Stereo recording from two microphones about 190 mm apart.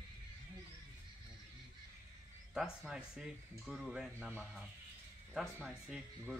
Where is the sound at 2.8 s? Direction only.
Centre (ahead or behind).